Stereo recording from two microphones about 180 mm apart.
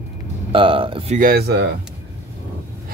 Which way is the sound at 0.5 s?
30° right (ahead or behind).